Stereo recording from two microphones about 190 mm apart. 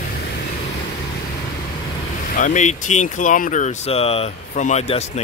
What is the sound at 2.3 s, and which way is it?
Speech, 40° left (ahead or behind).